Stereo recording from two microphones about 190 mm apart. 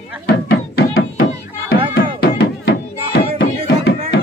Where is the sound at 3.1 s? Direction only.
60° left (ahead or behind).